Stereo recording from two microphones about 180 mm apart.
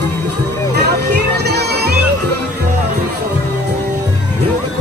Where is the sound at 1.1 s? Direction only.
65° right (ahead or behind).